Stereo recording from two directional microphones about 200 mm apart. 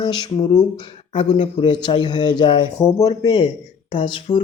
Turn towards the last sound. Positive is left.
turn(degrees=25)  # may be behind; listen again after turning